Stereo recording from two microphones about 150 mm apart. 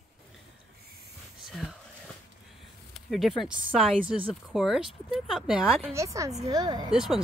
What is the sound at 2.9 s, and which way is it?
Speech, centre (ahead or behind).